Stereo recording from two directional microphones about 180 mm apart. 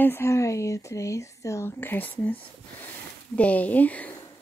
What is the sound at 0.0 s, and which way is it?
Speech, 15° left (ahead or behind).